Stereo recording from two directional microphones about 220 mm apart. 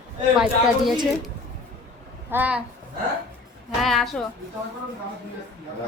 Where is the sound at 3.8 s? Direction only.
Centre (ahead or behind).